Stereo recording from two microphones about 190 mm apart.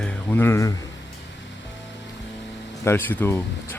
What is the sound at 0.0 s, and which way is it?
Speech, 10° left (ahead or behind).